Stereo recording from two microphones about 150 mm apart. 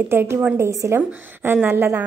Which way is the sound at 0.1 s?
15° right (ahead or behind).